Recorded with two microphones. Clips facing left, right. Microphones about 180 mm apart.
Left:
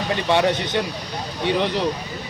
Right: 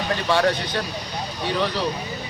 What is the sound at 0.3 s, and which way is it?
Speech, 20° left (ahead or behind).